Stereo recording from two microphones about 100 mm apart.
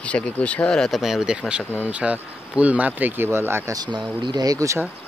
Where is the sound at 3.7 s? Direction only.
45° right (ahead or behind).